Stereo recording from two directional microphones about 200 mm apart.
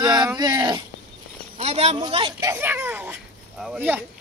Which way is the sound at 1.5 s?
30° right (ahead or behind).